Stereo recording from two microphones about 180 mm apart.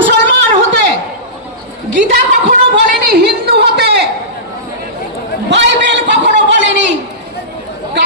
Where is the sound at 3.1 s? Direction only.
60° right (ahead or behind).